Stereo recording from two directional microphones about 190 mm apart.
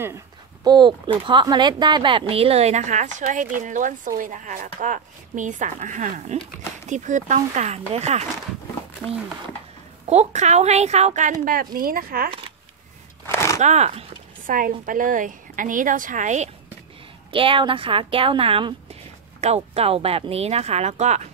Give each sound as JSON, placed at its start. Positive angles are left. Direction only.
{"t": 0.7, "sound": "speech", "side_deg": -25}
{"t": 10.0, "sound": "speech", "side_deg": -35}
{"t": 11.4, "sound": "a woman's voice", "side_deg": -50}
{"t": 12.3, "sound": "speech", "side_deg": -25}
{"t": 13.3, "sound": "a sound", "side_deg": 15}
{"t": 13.6, "sound": "a woman's voice", "side_deg": -35}
{"t": 17.3, "sound": "speech", "side_deg": -25}